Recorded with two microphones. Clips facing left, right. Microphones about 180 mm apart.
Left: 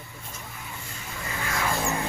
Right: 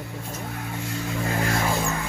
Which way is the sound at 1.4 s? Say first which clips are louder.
Right 5 dB; 40° right (ahead or behind).